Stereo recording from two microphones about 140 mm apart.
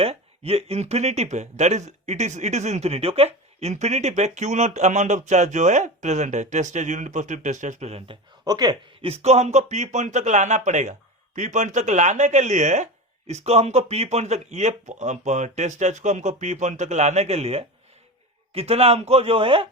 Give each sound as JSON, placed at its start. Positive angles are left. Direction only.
{"t": 0.0, "sound": "speech", "side_deg": -45}
{"t": 8.4, "sound": "speech", "side_deg": -30}
{"t": 9.0, "sound": "a man's voice", "side_deg": -50}